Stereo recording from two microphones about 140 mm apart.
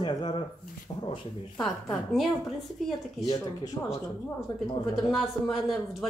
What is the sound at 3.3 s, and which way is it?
Speech, 30° left (ahead or behind).